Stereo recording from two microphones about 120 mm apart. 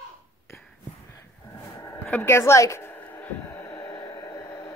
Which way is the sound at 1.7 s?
20° left (ahead or behind).